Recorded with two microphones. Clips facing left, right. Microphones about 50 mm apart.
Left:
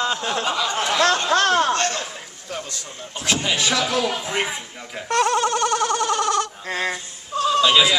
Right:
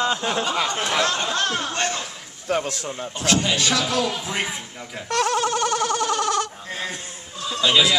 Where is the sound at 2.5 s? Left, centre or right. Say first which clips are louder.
Right 8 dB; right.